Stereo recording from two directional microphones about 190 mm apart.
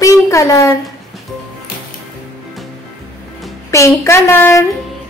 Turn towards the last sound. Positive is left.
turn(degrees=15)  # may be behind; listen again after turning